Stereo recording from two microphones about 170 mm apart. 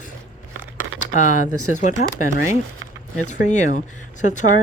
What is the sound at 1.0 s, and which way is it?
Speech, 45° left (ahead or behind).